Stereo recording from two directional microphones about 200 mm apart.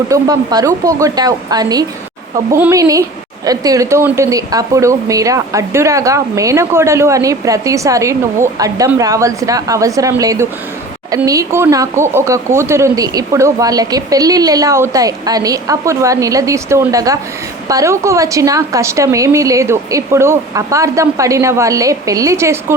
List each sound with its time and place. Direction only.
0.1 s speech: 15° right (ahead or behind)